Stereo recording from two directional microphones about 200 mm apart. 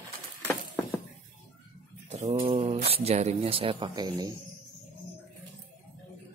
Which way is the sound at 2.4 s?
30° right (ahead or behind).